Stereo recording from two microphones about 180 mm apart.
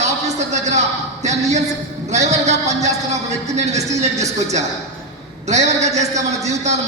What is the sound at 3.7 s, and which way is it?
Speech, 40° right (ahead or behind).